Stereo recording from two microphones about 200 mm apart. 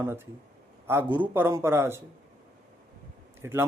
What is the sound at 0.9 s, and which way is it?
A man's voice, 10° right (ahead or behind).